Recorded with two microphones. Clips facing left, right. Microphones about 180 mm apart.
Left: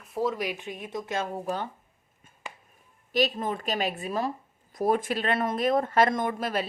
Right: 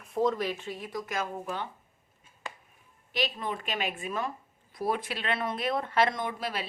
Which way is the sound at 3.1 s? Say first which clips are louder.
Left 6 dB; 45° left (ahead or behind).